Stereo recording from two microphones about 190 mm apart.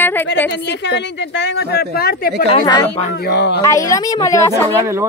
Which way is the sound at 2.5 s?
25° left (ahead or behind).